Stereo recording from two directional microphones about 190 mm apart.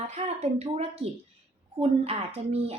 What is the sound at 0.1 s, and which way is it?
A woman's voice, 35° right (ahead or behind).